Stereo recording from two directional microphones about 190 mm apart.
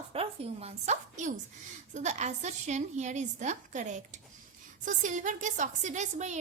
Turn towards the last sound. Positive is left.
turn(degrees=-40)  # may be behind; listen again after turning